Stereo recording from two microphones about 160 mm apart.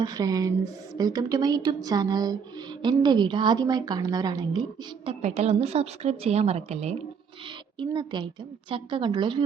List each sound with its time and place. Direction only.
0.0 s speech: 25° right (ahead or behind)
5.2 s speech: 45° right (ahead or behind)
7.4 s speech: 30° right (ahead or behind)